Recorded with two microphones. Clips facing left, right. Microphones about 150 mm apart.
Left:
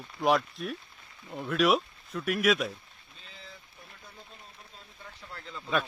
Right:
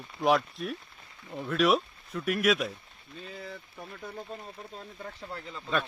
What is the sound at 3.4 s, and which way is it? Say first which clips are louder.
Boat: right 9 dB; 80° right.